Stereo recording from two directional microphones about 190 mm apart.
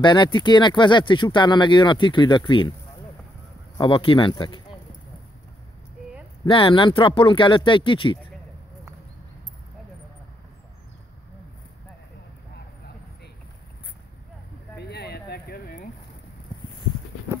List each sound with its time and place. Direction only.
0.0 s speech: 25° left (ahead or behind)
3.7 s speech: 25° left (ahead or behind)
6.4 s speech: 25° left (ahead or behind)
14.8 s a sound: 60° left (ahead or behind)